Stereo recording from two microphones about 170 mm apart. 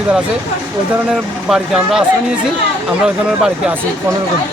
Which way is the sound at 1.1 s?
5° right (ahead or behind).